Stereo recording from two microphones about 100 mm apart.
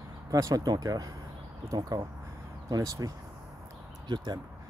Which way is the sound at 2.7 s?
35° right (ahead or behind).